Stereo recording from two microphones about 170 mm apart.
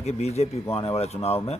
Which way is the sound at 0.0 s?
40° left (ahead or behind).